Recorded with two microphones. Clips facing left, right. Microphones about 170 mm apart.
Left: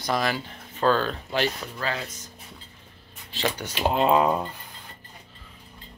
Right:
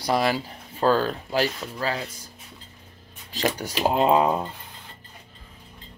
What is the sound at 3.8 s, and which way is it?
Speech, 15° right (ahead or behind).